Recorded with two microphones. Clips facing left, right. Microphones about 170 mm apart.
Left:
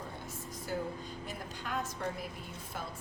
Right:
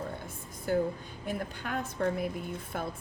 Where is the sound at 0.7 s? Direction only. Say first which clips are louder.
Right 8 dB; 55° right (ahead or behind).